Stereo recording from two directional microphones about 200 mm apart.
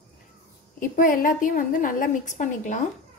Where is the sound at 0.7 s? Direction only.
45° left (ahead or behind).